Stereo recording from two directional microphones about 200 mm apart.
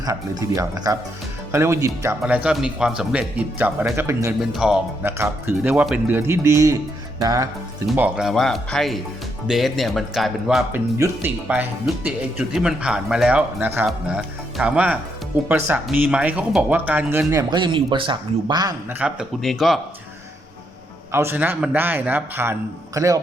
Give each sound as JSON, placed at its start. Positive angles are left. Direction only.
{"t": 0.0, "sound": "speech", "side_deg": -20}
{"t": 7.9, "sound": "speech", "side_deg": -5}
{"t": 10.9, "sound": "speech", "side_deg": -10}
{"t": 18.9, "sound": "speech", "side_deg": -5}
{"t": 21.1, "sound": "speech", "side_deg": -10}